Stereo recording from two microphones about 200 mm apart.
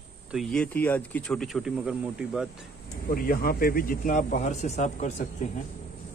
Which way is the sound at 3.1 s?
45° left (ahead or behind).